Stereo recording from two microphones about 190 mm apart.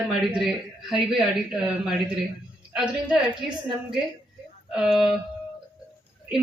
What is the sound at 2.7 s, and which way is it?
Speech, 5° right (ahead or behind).